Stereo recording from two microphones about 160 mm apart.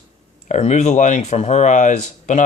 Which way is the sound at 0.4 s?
45° left (ahead or behind).